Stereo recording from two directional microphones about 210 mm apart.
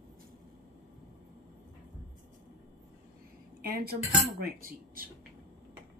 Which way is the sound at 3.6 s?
45° right (ahead or behind).